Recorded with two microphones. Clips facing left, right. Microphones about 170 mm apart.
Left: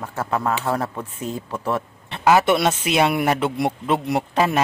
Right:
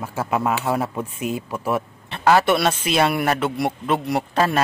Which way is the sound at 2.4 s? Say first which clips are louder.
Left 1 dB; 25° left (ahead or behind).